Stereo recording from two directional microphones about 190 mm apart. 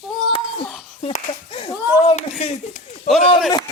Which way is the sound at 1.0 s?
30° left (ahead or behind).